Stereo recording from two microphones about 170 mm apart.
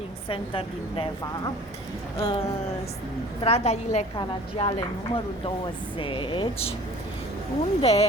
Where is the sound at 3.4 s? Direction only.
40° left (ahead or behind).